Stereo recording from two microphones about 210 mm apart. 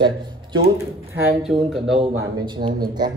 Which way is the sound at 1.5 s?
Centre (ahead or behind).